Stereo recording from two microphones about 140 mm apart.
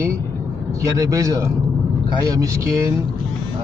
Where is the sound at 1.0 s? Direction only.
25° right (ahead or behind).